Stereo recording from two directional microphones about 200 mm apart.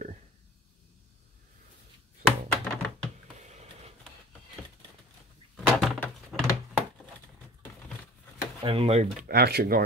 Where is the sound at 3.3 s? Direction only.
35° right (ahead or behind).